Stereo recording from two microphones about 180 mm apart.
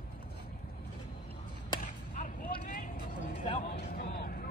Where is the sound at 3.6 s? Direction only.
55° left (ahead or behind).